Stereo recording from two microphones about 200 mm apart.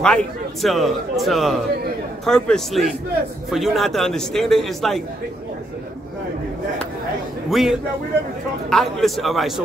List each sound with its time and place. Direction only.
0.0 s a man's voice: 5° left (ahead or behind)
7.4 s a man's voice: centre (ahead or behind)